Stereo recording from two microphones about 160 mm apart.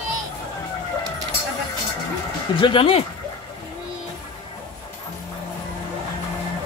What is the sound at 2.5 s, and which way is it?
Speech, 30° left (ahead or behind).